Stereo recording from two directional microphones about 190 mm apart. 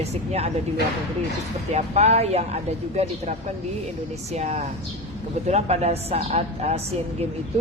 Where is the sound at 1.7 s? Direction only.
35° right (ahead or behind).